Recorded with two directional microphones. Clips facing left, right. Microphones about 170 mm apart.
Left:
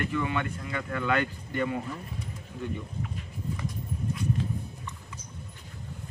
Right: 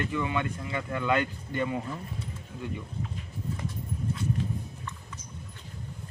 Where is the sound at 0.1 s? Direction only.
15° right (ahead or behind).